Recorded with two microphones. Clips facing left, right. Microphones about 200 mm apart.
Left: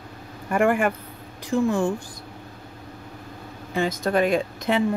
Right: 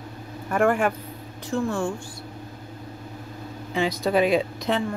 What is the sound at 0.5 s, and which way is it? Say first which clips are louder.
Speech: left 1 dB; 5° left (ahead or behind).